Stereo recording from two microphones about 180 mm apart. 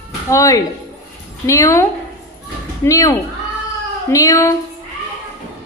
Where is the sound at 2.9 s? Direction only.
20° left (ahead or behind).